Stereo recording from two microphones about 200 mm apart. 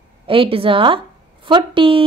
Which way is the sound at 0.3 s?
25° right (ahead or behind).